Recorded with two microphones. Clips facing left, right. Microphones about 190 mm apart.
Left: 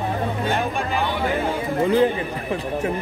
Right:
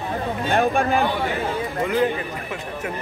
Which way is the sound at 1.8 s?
30° left (ahead or behind).